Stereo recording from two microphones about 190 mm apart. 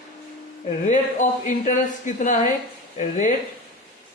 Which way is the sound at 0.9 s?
40° left (ahead or behind).